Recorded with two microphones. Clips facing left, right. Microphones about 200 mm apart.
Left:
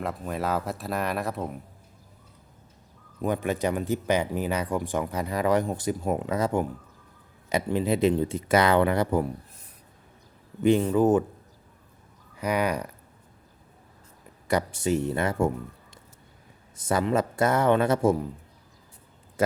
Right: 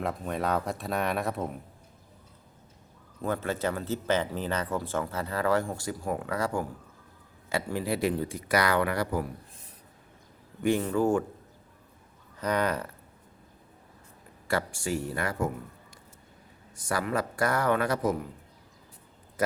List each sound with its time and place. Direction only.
0.0 s speech: centre (ahead or behind)
3.2 s speech: 15° left (ahead or behind)
10.6 s speech: 20° left (ahead or behind)
12.4 s speech: 10° left (ahead or behind)
14.4 s speech: 20° left (ahead or behind)
16.7 s speech: 25° left (ahead or behind)